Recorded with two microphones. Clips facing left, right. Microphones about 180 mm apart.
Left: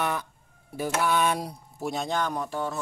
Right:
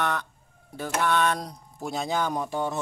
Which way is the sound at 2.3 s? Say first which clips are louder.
Right 2 dB; 15° right (ahead or behind).